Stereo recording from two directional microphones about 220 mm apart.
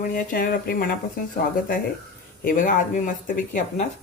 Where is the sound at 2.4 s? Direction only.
35° left (ahead or behind).